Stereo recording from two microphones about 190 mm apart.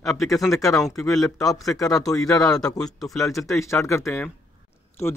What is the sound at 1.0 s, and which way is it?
Speech, centre (ahead or behind).